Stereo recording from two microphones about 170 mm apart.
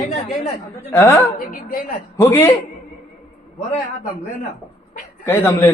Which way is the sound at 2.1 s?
15° left (ahead or behind).